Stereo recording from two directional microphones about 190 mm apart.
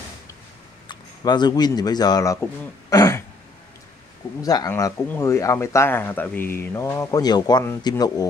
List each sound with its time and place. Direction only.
0.8 s speech: 25° left (ahead or behind)
2.9 s throat clearing: 20° left (ahead or behind)
4.4 s speech: 20° left (ahead or behind)